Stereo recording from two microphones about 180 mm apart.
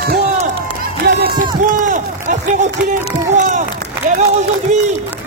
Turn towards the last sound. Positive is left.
turn(degrees=-40)  # may be behind; listen again after turning